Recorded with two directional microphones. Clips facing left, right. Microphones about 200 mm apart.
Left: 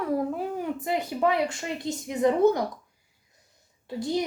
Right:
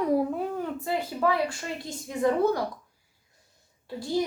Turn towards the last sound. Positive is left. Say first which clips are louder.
# even
turn(degrees=20)  # may be behind; listen again after turning